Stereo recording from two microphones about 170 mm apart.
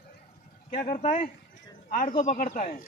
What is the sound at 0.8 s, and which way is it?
Speech, 45° left (ahead or behind).